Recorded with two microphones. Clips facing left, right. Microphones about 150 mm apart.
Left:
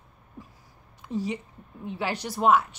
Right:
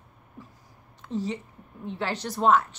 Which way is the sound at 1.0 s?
10° left (ahead or behind).